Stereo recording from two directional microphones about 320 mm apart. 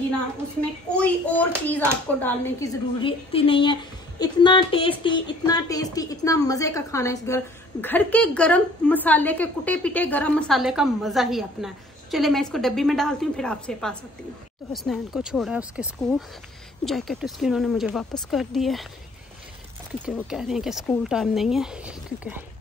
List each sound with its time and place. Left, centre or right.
0.9 s a woman's voice: centre
20.1 s speech: centre